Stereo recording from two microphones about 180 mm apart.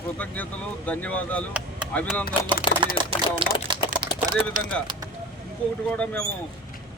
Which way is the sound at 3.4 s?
25° right (ahead or behind).